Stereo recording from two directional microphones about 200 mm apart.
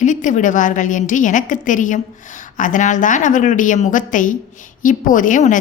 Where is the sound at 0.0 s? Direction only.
40° left (ahead or behind).